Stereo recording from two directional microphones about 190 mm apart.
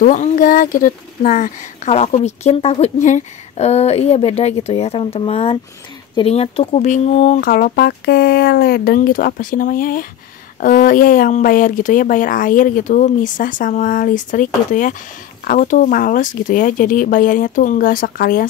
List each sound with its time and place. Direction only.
0.0 s a woman's voice: 45° left (ahead or behind)
7.3 s speech: 50° left (ahead or behind)